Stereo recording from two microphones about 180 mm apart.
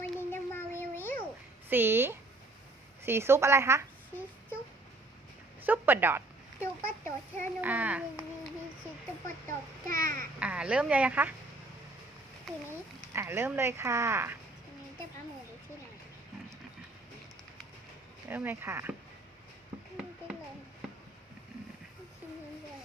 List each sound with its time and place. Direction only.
0.0 s a sound: 10° left (ahead or behind)
1.7 s speech: 10° right (ahead or behind)
5.6 s speech: 10° right (ahead or behind)
6.6 s a child's voice: 15° left (ahead or behind)
7.6 s speech: 10° right (ahead or behind)
9.9 s babbling: 50° right (ahead or behind)
10.4 s speech: 5° right (ahead or behind)
12.5 s speech: centre (ahead or behind)
13.1 s speech: 15° right (ahead or behind)
18.3 s speech: 10° right (ahead or behind)